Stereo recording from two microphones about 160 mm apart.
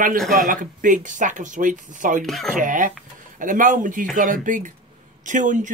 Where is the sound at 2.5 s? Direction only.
55° right (ahead or behind).